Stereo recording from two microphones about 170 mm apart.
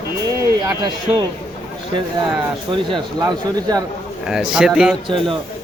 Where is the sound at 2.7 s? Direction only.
30° right (ahead or behind).